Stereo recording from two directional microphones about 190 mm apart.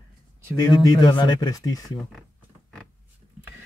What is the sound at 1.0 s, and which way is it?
Speech, 25° left (ahead or behind).